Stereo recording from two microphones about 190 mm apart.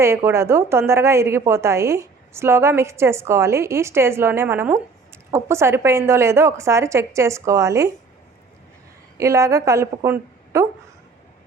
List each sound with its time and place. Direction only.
0.0 s a woman's voice: 15° right (ahead or behind)
9.1 s a woman's voice: 15° right (ahead or behind)